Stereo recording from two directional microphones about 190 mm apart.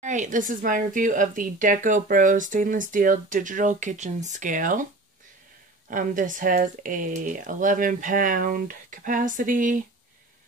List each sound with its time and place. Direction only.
0.0 s speech: 40° right (ahead or behind)
5.9 s speech: 45° right (ahead or behind)